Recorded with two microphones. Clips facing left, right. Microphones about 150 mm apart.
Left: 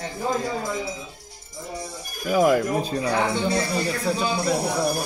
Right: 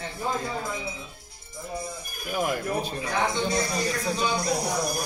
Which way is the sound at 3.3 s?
60° left (ahead or behind).